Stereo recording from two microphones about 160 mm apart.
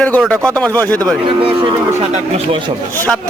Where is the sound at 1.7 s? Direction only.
40° right (ahead or behind).